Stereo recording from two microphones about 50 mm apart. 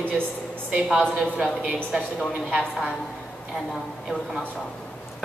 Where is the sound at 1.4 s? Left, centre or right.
Right.